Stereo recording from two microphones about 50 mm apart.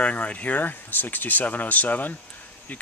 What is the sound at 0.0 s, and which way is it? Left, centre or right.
Speech, left.